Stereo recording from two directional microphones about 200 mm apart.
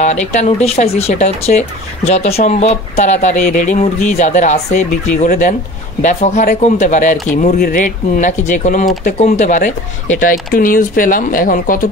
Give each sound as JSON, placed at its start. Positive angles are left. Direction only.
{"t": 0.0, "sound": "speech", "side_deg": 35}